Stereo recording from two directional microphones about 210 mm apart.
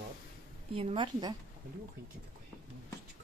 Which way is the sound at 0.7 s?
20° right (ahead or behind).